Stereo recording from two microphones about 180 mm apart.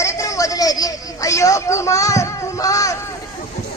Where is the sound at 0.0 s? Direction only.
15° left (ahead or behind).